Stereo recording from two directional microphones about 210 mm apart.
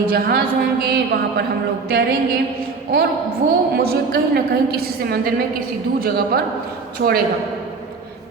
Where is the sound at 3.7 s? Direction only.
50° right (ahead or behind).